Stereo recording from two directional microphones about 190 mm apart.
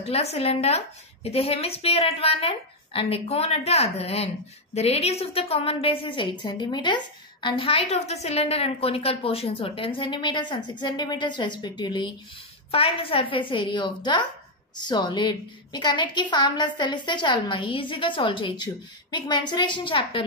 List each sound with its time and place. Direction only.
0.0 s a woman's voice: 30° left (ahead or behind)